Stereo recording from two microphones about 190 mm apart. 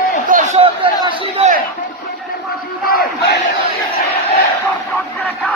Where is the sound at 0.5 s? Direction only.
30° right (ahead or behind).